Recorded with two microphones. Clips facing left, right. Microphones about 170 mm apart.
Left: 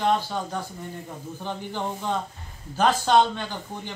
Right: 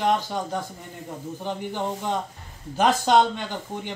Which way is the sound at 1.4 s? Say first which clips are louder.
Right 2 dB; 15° right (ahead or behind).